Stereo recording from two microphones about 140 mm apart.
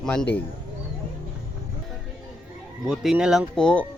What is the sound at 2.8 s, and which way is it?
Speech, 5° right (ahead or behind).